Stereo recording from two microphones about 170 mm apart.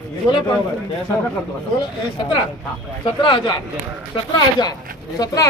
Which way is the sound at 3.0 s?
30° left (ahead or behind).